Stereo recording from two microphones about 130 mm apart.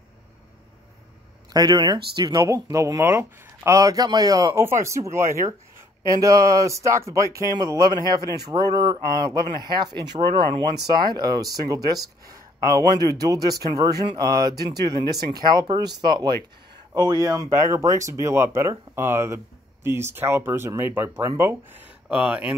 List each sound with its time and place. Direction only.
1.5 s speech: 30° right (ahead or behind); by 22.6 s 10° right (ahead or behind)